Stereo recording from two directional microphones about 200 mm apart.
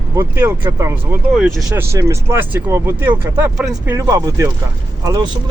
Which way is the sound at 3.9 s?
15° right (ahead or behind).